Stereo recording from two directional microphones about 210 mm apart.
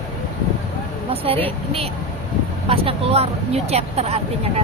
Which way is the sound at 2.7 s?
25° right (ahead or behind).